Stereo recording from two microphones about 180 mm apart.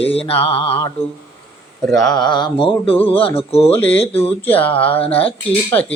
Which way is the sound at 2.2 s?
25° left (ahead or behind).